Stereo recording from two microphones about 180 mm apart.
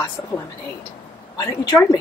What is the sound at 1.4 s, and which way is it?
Speech, 20° left (ahead or behind).